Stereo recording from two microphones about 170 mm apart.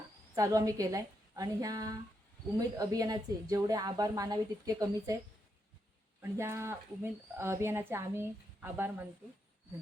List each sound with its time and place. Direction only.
0.3 s a woman's voice: 20° right (ahead or behind)
6.3 s speech: 15° right (ahead or behind)